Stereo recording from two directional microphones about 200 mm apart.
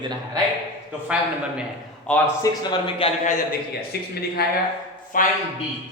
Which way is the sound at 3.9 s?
55° left (ahead or behind).